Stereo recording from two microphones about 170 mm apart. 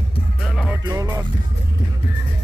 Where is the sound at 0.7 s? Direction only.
20° right (ahead or behind).